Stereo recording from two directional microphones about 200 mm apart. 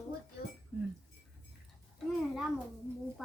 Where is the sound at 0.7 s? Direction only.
5° right (ahead or behind).